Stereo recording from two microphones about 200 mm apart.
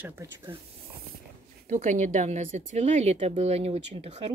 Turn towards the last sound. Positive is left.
turn(degrees=-30)  # may be behind; listen again after turning